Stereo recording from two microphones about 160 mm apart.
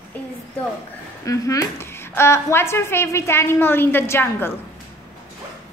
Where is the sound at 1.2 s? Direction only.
20° left (ahead or behind).